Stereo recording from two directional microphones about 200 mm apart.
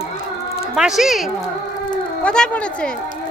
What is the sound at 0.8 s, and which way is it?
Speech, centre (ahead or behind).